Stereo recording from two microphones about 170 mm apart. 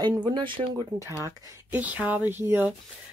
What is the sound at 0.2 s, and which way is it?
Speech, 30° right (ahead or behind).